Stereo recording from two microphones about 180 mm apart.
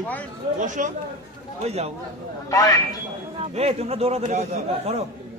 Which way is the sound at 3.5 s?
35° right (ahead or behind).